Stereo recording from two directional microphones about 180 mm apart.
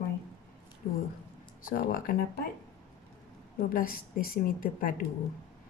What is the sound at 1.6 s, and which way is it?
Speech, 50° left (ahead or behind).